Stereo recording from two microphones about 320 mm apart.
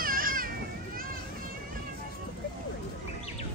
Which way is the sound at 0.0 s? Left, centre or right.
Right.